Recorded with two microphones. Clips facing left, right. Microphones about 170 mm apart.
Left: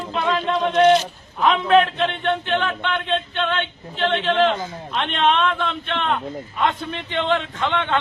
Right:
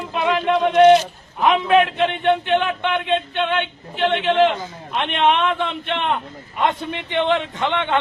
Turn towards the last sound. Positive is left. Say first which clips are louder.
# right 1 dB
turn(degrees=-20)  # may be behind; listen again after turning